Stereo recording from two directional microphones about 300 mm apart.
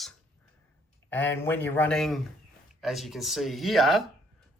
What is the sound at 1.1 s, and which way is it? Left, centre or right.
Speech, centre.